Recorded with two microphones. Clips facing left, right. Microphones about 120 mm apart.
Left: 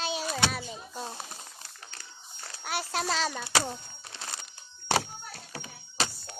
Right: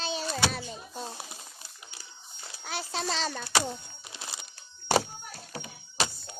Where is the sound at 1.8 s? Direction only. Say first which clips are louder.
Left 2 dB; 10° right (ahead or behind).